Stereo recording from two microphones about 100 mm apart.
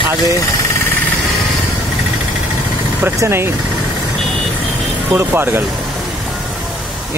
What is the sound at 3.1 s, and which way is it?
Speech, 25° right (ahead or behind).